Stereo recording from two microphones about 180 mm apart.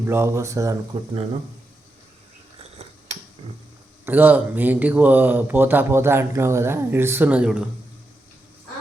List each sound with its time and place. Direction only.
0.0 s speech: 15° right (ahead or behind)
4.0 s speech: 10° right (ahead or behind)